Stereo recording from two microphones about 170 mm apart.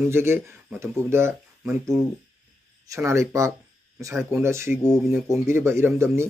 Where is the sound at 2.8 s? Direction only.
15° right (ahead or behind).